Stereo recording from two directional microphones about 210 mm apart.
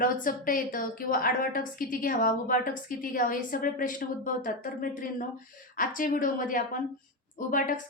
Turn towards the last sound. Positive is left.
turn(degrees=40)  # may be behind; listen again after turning